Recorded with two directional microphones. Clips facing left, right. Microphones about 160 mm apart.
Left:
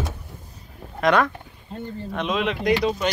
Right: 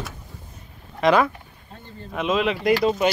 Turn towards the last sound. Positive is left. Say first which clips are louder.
# right 2 dB
turn(degrees=0)  # may be behind; listen again after turning